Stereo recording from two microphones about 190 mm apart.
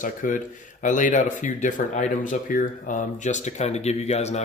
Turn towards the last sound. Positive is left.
turn(degrees=35)  # may be behind; listen again after turning